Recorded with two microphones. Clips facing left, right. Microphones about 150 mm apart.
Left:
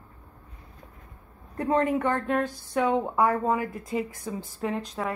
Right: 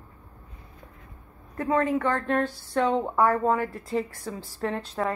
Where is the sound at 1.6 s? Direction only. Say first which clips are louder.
Even; 25° left (ahead or behind).